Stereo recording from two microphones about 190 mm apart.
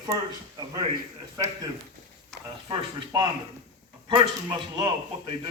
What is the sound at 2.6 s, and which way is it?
Speech, 25° right (ahead or behind).